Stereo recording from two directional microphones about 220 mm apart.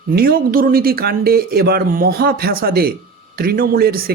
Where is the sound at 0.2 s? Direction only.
40° right (ahead or behind).